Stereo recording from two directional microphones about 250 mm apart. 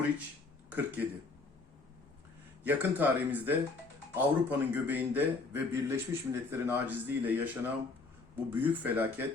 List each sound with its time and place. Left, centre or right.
0.7 s speech: centre
2.6 s a man's voice: centre